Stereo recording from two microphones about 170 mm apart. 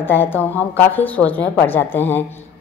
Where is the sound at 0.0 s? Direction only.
10° left (ahead or behind).